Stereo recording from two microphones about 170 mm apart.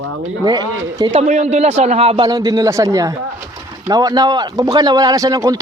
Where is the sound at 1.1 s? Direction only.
40° right (ahead or behind); by 5.5 s 20° right (ahead or behind).